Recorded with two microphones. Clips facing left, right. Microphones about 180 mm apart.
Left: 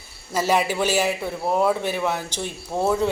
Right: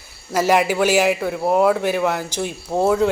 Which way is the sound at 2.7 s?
25° right (ahead or behind).